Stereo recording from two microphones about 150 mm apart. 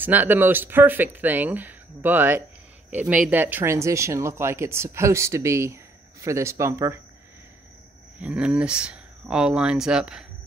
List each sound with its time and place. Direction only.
0.0 s speech: 10° right (ahead or behind)
8.2 s speech: 5° right (ahead or behind)